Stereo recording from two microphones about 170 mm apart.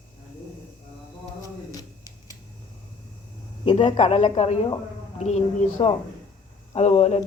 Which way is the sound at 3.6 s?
40° left (ahead or behind).